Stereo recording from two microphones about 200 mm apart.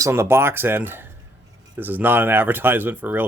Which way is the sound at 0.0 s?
15° right (ahead or behind).